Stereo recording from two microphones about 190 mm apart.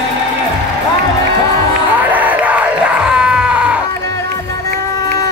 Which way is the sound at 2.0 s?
10° right (ahead or behind).